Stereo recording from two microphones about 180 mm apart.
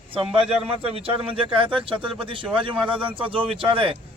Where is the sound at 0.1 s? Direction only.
30° right (ahead or behind).